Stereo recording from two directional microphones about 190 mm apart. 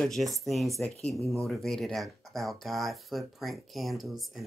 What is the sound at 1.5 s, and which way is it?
Speech, centre (ahead or behind).